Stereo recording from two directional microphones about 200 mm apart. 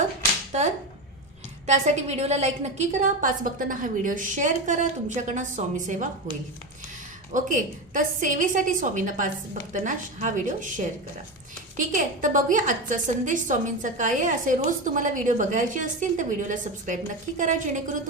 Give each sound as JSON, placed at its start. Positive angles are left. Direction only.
{"t": 0.5, "sound": "a woman's voice", "side_deg": -35}
{"t": 7.3, "sound": "a woman's voice", "side_deg": -40}